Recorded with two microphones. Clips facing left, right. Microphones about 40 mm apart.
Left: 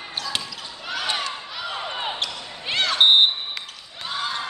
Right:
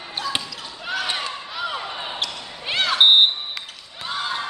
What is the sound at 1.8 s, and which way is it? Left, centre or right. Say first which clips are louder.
Basketball bounce: left 2 dB; centre.